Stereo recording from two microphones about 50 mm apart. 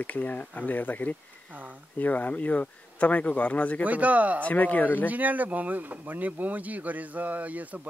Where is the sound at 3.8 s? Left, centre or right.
Right.